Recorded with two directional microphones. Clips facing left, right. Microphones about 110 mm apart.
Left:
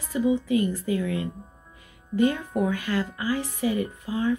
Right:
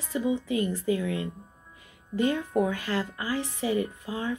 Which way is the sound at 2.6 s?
30° right (ahead or behind).